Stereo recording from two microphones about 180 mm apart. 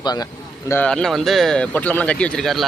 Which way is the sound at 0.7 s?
10° left (ahead or behind).